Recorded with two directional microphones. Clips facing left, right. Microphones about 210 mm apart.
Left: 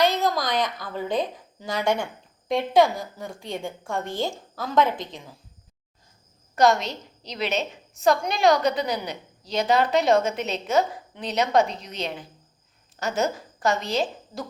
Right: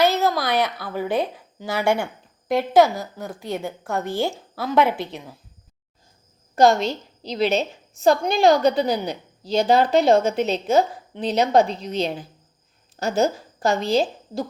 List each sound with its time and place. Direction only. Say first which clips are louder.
0.0 s a woman's voice: right 3 dB; 5° right (ahead or behind)
6.6 s a woman's voice: right 4 dB; 30° right (ahead or behind)